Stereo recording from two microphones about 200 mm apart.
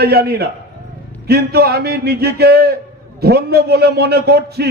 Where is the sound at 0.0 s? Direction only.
50° right (ahead or behind).